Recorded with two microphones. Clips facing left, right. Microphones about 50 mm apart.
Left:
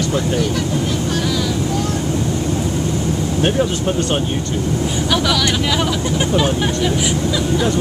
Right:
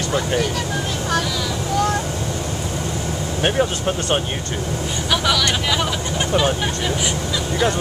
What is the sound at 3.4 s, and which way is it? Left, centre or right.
Speech, centre.